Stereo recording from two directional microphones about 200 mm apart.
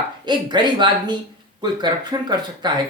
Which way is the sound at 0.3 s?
20° right (ahead or behind).